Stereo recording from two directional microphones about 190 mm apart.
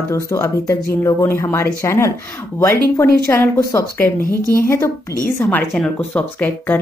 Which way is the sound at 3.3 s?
10° left (ahead or behind).